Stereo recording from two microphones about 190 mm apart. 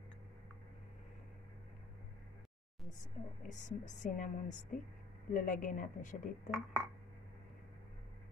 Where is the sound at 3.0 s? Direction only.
40° left (ahead or behind).